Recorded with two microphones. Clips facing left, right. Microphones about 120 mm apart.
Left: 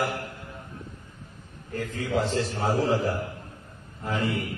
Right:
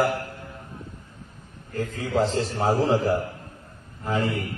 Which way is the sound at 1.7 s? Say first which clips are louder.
Right 3 dB; 35° right (ahead or behind).